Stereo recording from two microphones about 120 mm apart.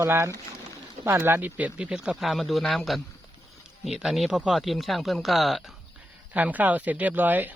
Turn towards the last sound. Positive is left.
turn(degrees=-15)  # may be behind; listen again after turning